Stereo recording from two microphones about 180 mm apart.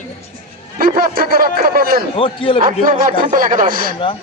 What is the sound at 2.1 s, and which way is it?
Speech, 30° left (ahead or behind).